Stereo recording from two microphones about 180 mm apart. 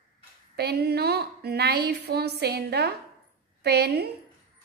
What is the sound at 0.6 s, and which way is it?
A woman's voice, 65° right (ahead or behind).